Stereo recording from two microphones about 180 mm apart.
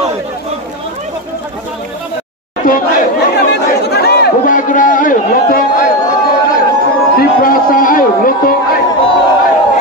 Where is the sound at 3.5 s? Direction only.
65° left (ahead or behind).